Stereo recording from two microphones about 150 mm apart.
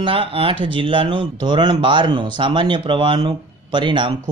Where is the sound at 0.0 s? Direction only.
40° right (ahead or behind).